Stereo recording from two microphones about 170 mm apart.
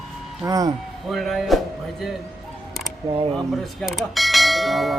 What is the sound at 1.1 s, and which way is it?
Speech, centre (ahead or behind).